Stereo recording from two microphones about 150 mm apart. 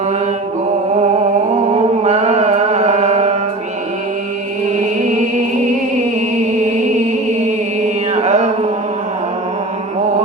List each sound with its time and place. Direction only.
1.7 s music: 45° right (ahead or behind)
8.1 s mantra: 45° right (ahead or behind)